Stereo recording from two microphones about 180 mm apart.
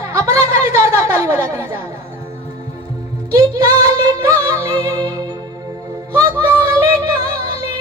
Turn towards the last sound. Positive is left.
turn(degrees=-20)  # may be behind; listen again after turning